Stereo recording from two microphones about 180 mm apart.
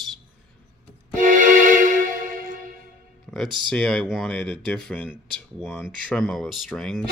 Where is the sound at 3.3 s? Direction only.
Centre (ahead or behind).